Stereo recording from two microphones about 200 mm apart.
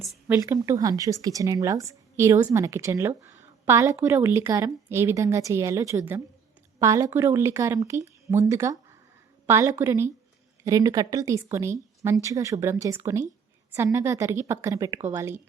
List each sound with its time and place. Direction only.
0.0 s speech: centre (ahead or behind)
0.3 s a woman's voice: 15° right (ahead or behind)